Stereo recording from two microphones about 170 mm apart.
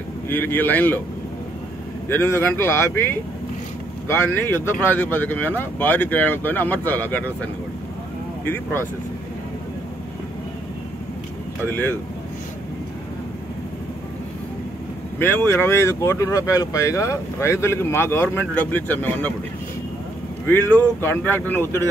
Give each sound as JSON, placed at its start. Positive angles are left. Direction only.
{"t": 0.3, "sound": "speech", "side_deg": 10}
{"t": 2.0, "sound": "speech", "side_deg": 15}
{"t": 11.6, "sound": "speech", "side_deg": 10}
{"t": 15.1, "sound": "speech", "side_deg": 10}
{"t": 20.4, "sound": "speech", "side_deg": 10}